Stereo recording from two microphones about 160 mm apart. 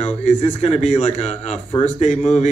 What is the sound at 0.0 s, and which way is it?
Speech, 40° left (ahead or behind).